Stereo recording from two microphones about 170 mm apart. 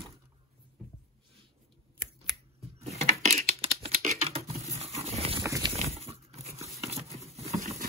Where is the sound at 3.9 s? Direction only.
55° right (ahead or behind).